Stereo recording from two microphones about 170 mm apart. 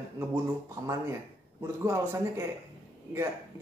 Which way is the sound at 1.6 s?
15° right (ahead or behind).